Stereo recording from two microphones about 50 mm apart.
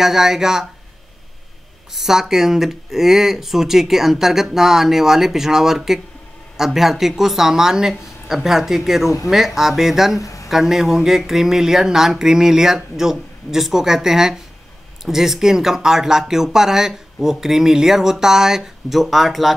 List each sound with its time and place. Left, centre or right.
0.0 s speech: centre
2.0 s speech: centre
10.1 s a sound: left
10.5 s speech: centre